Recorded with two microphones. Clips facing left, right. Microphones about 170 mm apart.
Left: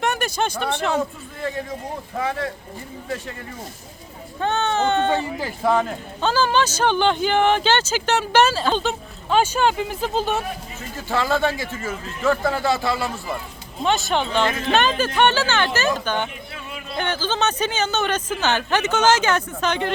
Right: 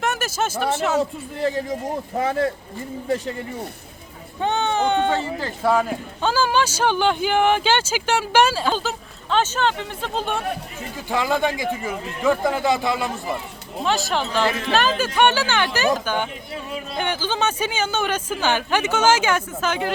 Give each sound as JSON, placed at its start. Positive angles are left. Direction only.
{"t": 0.0, "sound": "speech", "side_deg": 0}
{"t": 1.4, "sound": "speech", "side_deg": -30}
{"t": 4.4, "sound": "a sound", "side_deg": -15}
{"t": 5.1, "sound": "speech", "side_deg": 15}
{"t": 5.6, "sound": "speech", "side_deg": -5}
{"t": 9.3, "sound": "speech", "side_deg": 10}
{"t": 10.9, "sound": "speech", "side_deg": -15}
{"t": 13.8, "sound": "speech", "side_deg": 0}